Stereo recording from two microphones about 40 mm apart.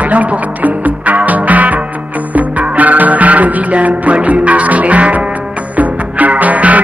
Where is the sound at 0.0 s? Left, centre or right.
Right.